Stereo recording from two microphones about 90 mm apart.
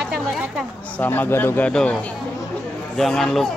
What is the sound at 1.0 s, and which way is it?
Speech, 20° left (ahead or behind).